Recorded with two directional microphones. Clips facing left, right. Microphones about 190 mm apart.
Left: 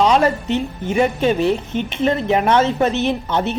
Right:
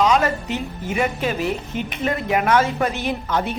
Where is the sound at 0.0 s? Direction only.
30° left (ahead or behind).